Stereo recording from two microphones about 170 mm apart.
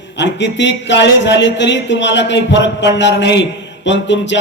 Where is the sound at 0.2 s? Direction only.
90° left.